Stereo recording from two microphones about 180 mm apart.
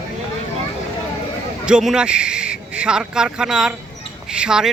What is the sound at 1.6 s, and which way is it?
Speech, 5° right (ahead or behind).